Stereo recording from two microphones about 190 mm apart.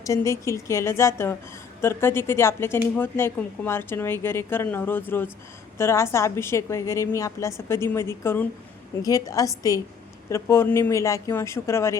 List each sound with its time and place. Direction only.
0.0 s speech: 15° left (ahead or behind)